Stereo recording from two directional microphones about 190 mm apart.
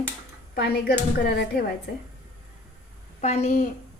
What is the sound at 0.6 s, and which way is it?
Speech, 55° left (ahead or behind).